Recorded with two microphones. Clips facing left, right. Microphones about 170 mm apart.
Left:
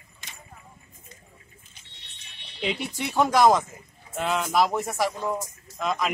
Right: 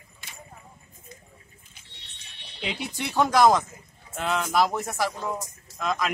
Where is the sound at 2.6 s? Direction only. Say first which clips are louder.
Left 3 dB; centre (ahead or behind).